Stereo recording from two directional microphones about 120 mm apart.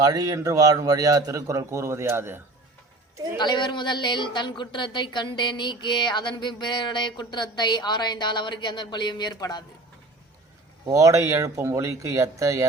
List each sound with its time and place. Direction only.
0.0 s a man's voice: 30° right (ahead or behind)
3.3 s a woman's voice: 40° left (ahead or behind)
10.8 s a man's voice: 25° right (ahead or behind)